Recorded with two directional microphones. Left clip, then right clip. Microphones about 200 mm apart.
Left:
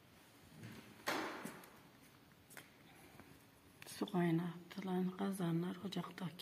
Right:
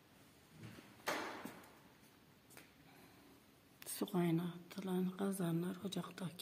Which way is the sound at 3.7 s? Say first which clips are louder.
Even; 10° right (ahead or behind).